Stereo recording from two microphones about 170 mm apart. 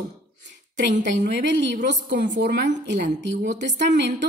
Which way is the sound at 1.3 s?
85° right.